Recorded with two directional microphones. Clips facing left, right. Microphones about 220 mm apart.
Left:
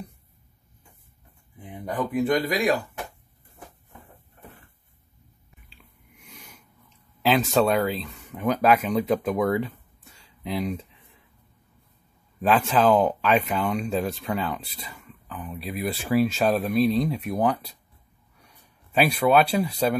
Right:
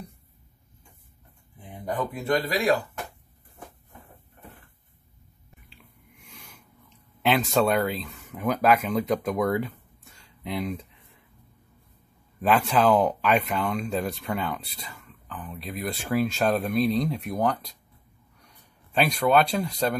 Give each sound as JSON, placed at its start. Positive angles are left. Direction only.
{"t": 2.1, "sound": "speech", "side_deg": 20}
{"t": 7.2, "sound": "speech", "side_deg": 0}
{"t": 12.4, "sound": "speech", "side_deg": 0}